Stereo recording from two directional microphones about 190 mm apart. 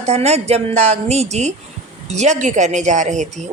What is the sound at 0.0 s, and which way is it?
A woman's voice, 35° right (ahead or behind).